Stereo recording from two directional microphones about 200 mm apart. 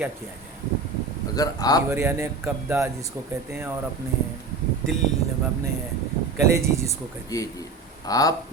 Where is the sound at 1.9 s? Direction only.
15° right (ahead or behind).